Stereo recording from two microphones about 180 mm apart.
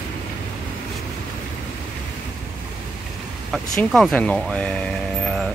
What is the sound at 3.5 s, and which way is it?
Speech, 5° left (ahead or behind).